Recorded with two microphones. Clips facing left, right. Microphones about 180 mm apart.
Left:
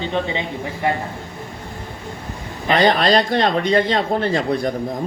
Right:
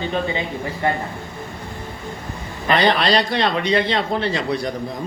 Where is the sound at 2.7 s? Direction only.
45° left (ahead or behind).